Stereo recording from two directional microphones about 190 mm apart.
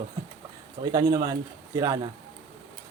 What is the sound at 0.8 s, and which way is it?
A man's voice, 25° right (ahead or behind).